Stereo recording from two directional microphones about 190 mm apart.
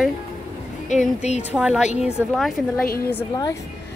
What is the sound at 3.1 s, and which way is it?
Speech, 15° left (ahead or behind).